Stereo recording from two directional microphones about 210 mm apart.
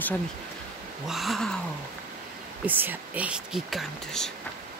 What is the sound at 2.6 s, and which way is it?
Speech, 10° right (ahead or behind).